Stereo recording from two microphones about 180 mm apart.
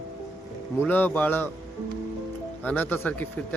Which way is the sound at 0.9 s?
10° left (ahead or behind).